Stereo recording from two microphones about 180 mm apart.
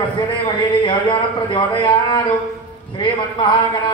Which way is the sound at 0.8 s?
25° left (ahead or behind).